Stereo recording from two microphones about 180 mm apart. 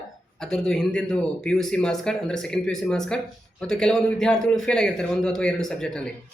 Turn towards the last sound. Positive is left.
turn(degrees=5)  # may be behind; listen again after turning